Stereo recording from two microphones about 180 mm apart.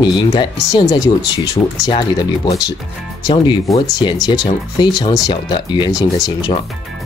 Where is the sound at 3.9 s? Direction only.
20° left (ahead or behind).